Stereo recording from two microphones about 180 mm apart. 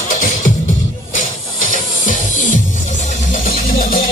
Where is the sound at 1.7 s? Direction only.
45° left (ahead or behind).